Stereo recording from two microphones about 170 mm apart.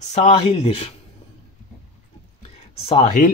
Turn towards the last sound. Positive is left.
turn(degrees=35)  # may be behind; listen again after turning